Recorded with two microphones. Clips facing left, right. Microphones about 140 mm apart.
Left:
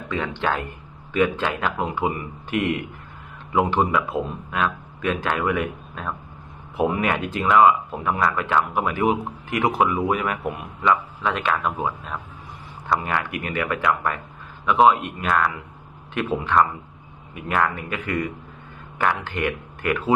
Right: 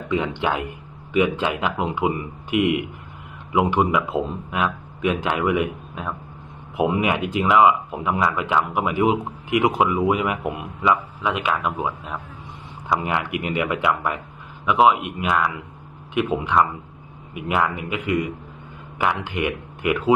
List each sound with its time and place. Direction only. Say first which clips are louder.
0.1 s a man's voice: right 2 dB; 20° right (ahead or behind)
3.9 s a man's voice: right 1 dB; 20° right (ahead or behind)